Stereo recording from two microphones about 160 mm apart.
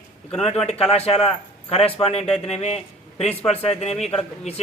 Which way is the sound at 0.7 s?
40° left (ahead or behind).